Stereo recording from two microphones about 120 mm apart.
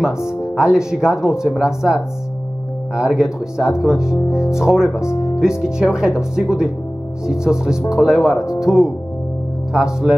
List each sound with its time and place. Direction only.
0.0 s speech: 5° right (ahead or behind)
5.0 s speech: 25° left (ahead or behind)
5.8 s speech: 5° right (ahead or behind)